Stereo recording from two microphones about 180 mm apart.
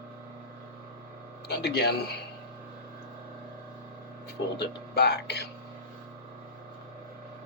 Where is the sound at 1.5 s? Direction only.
65° left (ahead or behind).